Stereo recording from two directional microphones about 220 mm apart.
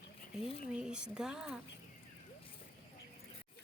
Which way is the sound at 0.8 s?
5° right (ahead or behind).